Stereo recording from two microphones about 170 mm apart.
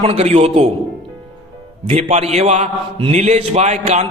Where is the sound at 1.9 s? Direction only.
40° right (ahead or behind).